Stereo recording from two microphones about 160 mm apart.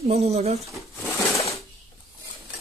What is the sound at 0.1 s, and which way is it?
Speech, 40° right (ahead or behind).